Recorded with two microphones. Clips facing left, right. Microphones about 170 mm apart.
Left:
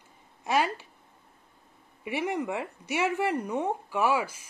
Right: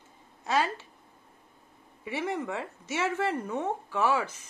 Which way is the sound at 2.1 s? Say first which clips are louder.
Left 2 dB; 15° left (ahead or behind).